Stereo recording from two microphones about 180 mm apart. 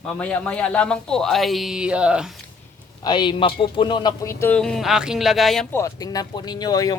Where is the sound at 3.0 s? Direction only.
25° left (ahead or behind); by 5.6 s centre (ahead or behind).